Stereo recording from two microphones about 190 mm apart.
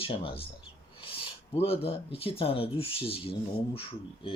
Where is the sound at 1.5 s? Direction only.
30° left (ahead or behind).